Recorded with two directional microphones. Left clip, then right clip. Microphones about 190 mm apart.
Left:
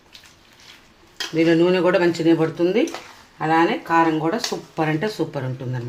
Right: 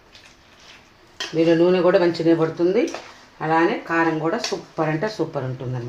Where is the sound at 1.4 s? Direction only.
50° left (ahead or behind).